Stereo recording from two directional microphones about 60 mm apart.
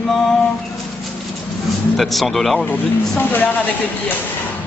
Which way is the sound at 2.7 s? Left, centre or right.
Left.